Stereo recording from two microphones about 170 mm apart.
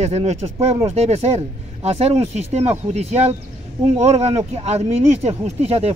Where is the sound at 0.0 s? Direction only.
40° right (ahead or behind).